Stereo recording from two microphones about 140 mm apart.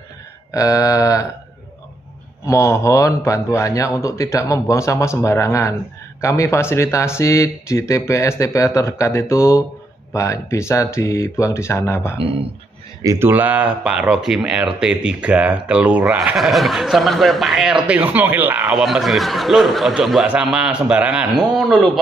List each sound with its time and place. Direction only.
0.5 s speech: 25° left (ahead or behind)
2.4 s speech: 20° left (ahead or behind)
13.0 s speech: 25° right (ahead or behind)
13.3 s speech: 10° right (ahead or behind)
17.8 s speech: 10° right (ahead or behind)